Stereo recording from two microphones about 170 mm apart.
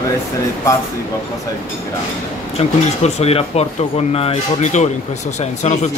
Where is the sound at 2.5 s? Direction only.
40° left (ahead or behind).